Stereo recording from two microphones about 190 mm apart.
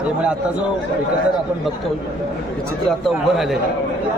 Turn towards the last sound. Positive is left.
turn(degrees=0)  # may be behind; listen again after turning